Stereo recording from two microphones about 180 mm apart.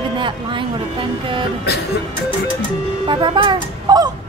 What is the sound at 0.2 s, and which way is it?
Speech, 25° right (ahead or behind).